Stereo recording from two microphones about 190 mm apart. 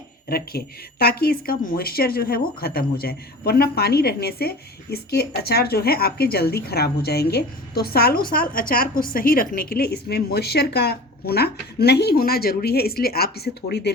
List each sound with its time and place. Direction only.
0.3 s a woman's voice: 55° left (ahead or behind)